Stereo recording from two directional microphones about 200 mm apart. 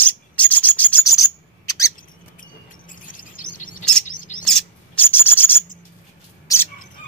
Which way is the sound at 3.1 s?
45° left (ahead or behind).